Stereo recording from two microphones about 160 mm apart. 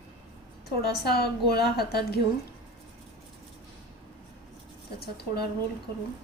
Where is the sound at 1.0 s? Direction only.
80° left.